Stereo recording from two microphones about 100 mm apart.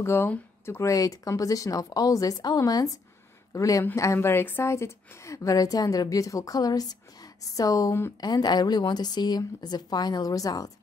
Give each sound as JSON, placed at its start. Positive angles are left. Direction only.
{"t": 0.0, "sound": "a woman's voice", "side_deg": 25}